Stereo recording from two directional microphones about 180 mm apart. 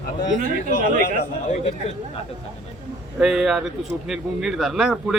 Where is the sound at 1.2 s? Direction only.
40° left (ahead or behind).